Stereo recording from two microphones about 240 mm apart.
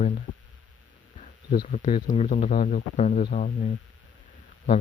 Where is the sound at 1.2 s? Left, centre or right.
Left.